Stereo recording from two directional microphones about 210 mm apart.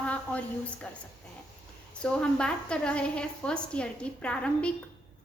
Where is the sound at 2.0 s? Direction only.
5° left (ahead or behind).